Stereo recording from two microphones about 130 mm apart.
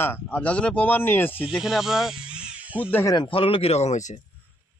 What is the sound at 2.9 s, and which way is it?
Speech, 25° left (ahead or behind).